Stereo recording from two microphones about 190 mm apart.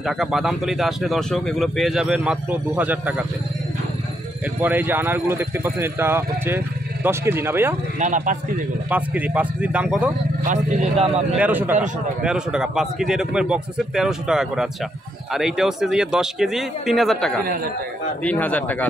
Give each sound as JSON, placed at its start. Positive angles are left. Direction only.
{"t": 0.0, "sound": "speech", "side_deg": 0}
{"t": 4.6, "sound": "speech", "side_deg": -10}
{"t": 8.0, "sound": "speech", "side_deg": -40}
{"t": 8.9, "sound": "speech", "side_deg": -10}
{"t": 10.4, "sound": "speech", "side_deg": -40}
{"t": 11.3, "sound": "speech", "side_deg": -10}